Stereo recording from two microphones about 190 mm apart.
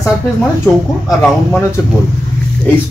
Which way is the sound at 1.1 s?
5° left (ahead or behind).